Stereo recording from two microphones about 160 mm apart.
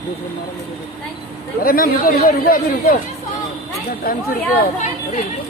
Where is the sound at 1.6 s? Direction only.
65° left (ahead or behind).